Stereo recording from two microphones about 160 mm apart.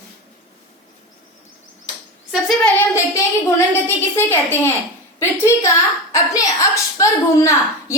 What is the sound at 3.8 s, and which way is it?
Speech, 15° left (ahead or behind).